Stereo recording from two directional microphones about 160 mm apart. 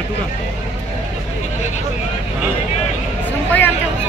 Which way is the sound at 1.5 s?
45° left (ahead or behind).